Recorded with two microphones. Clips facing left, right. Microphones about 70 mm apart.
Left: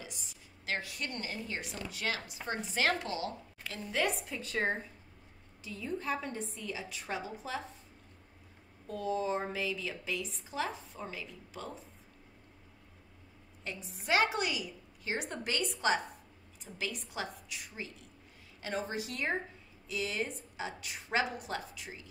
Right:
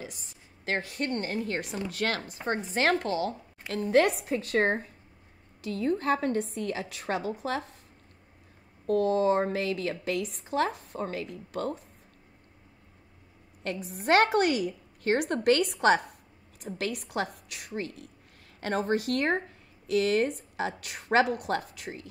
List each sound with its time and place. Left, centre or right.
0.0 s a woman's voice: right
8.8 s a woman's voice: right
13.7 s a woman's voice: right